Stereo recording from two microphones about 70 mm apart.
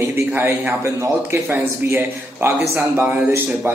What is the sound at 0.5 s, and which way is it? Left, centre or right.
A man's voice, right.